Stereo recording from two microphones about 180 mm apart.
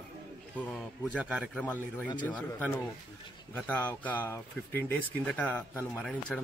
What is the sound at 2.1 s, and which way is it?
Speech, 25° left (ahead or behind).